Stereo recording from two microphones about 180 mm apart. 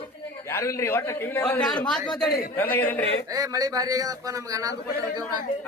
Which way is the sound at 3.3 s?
20° right (ahead or behind).